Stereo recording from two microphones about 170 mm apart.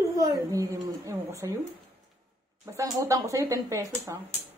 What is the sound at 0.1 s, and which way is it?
Speech, 20° right (ahead or behind).